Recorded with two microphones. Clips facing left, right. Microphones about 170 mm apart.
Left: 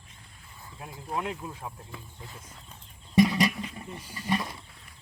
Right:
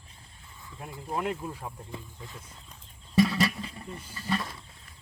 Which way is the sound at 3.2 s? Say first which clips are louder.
Left 2 dB; 20° left (ahead or behind).